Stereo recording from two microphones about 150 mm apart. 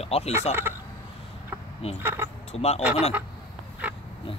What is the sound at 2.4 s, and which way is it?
Speech, 45° left (ahead or behind).